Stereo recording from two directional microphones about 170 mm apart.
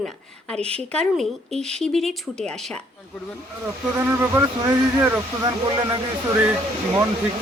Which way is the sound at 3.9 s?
15° right (ahead or behind).